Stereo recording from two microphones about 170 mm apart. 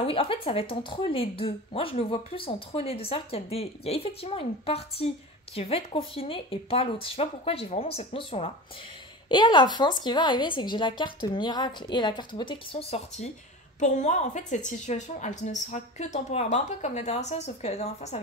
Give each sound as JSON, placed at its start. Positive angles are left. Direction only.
{"t": 0.0, "sound": "a woman's voice", "side_deg": 30}
{"t": 13.7, "sound": "a woman's voice", "side_deg": 45}